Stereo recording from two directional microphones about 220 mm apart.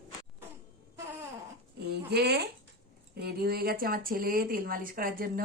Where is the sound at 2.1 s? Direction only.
50° right (ahead or behind).